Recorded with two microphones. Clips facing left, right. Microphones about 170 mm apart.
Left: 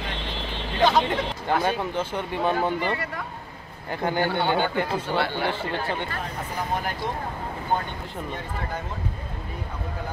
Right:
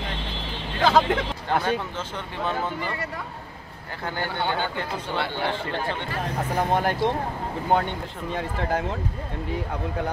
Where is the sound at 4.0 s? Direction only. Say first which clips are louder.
Left 4 dB; 15° left (ahead or behind).